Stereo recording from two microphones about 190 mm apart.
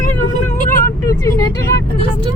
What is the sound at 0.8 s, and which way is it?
Vehicle, 15° left (ahead or behind).